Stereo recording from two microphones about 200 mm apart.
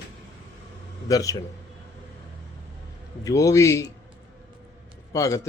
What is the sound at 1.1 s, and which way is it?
Speech, 20° left (ahead or behind).